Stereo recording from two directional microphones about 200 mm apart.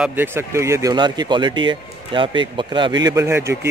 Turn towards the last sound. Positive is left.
turn(degrees=-15)  # may be behind; listen again after turning